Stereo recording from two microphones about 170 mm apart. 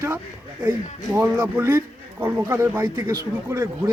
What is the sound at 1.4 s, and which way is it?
A man's voice, 15° right (ahead or behind).